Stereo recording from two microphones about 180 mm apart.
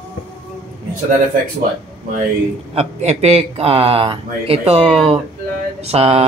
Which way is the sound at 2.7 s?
35° right (ahead or behind).